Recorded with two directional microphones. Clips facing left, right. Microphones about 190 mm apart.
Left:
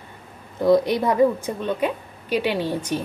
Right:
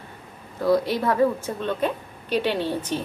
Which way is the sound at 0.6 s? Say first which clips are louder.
Left 3 dB; 20° left (ahead or behind).